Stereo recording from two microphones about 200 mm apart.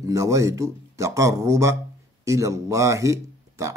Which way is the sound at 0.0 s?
15° right (ahead or behind).